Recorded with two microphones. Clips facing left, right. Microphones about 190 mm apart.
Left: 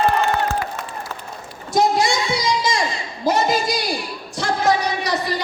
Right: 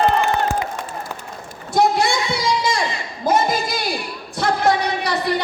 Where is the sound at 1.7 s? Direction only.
60° right (ahead or behind).